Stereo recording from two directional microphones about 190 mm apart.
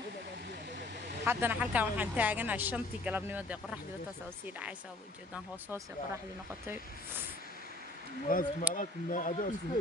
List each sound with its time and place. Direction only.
1.2 s speech: 10° right (ahead or behind)
8.3 s speech: 45° left (ahead or behind)